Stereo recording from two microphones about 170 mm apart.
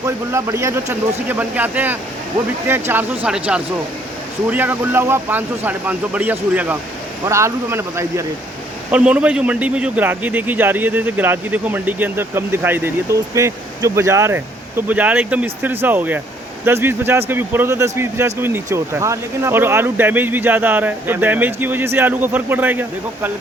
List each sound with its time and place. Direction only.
0.0 s a man's voice: 15° right (ahead or behind)